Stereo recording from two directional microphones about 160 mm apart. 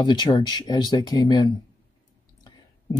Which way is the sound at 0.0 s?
25° left (ahead or behind).